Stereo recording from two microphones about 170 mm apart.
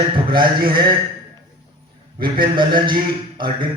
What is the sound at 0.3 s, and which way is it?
Speech, 30° right (ahead or behind).